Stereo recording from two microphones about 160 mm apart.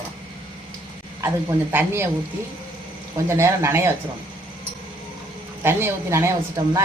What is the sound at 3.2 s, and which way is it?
Speech, 15° right (ahead or behind).